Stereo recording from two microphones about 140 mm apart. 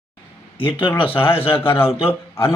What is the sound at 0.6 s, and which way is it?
Speech, 40° left (ahead or behind).